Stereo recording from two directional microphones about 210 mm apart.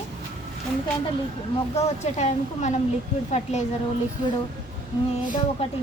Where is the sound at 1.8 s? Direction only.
30° left (ahead or behind).